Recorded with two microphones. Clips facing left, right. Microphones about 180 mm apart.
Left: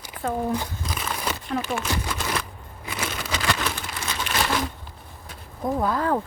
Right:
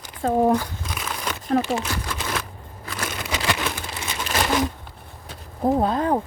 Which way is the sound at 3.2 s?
15° right (ahead or behind).